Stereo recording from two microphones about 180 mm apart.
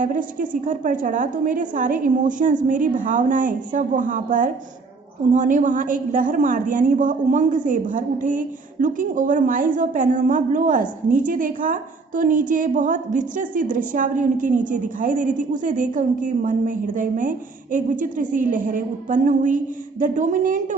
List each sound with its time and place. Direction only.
0.0 s a woman's voice: 45° right (ahead or behind)